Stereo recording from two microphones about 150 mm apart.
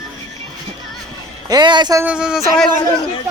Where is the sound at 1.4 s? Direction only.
30° right (ahead or behind).